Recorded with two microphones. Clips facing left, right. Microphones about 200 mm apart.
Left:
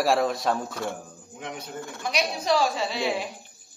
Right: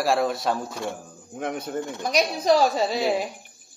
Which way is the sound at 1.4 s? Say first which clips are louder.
Right 7 dB; 55° right (ahead or behind).